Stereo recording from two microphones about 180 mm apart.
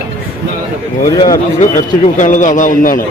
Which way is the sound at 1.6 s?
45° left (ahead or behind).